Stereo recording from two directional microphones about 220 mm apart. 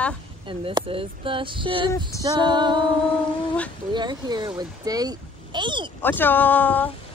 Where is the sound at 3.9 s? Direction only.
20° right (ahead or behind).